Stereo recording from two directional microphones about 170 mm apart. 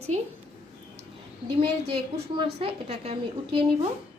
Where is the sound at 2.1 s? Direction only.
35° right (ahead or behind).